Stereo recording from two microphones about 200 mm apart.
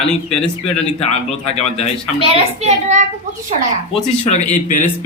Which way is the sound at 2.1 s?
30° right (ahead or behind).